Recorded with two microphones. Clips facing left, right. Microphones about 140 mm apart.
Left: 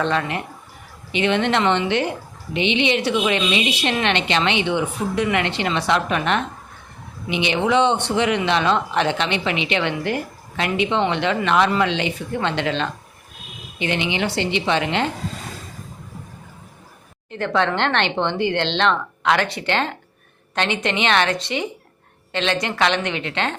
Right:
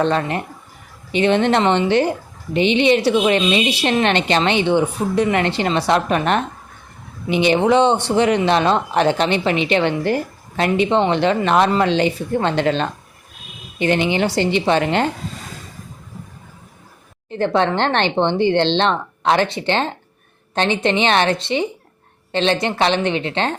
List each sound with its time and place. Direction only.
0.0 s a woman's voice: 35° right (ahead or behind)
17.3 s a woman's voice: 30° right (ahead or behind)